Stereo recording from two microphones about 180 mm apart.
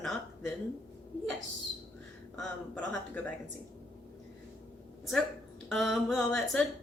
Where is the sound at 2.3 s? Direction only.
5° left (ahead or behind).